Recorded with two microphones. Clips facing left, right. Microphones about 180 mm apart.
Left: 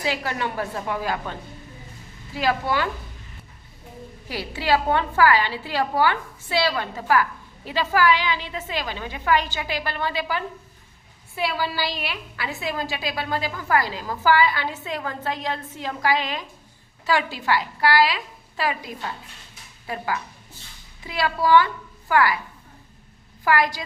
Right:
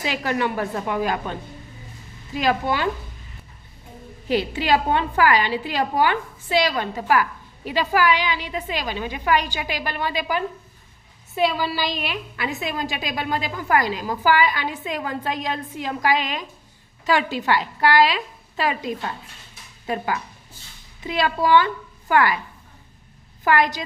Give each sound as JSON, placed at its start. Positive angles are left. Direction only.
{"t": 0.3, "sound": "a woman's voice", "side_deg": -20}
{"t": 4.3, "sound": "a woman's voice", "side_deg": -20}
{"t": 23.4, "sound": "a woman's voice", "side_deg": -20}